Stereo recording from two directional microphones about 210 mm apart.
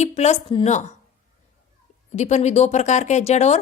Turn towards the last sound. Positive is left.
turn(degrees=30)  # may be behind; listen again after turning